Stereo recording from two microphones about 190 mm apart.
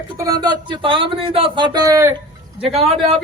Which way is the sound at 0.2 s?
20° right (ahead or behind).